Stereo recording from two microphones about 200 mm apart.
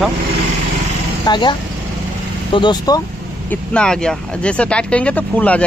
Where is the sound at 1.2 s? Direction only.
20° left (ahead or behind).